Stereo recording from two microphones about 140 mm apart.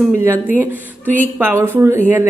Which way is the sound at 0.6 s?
15° right (ahead or behind).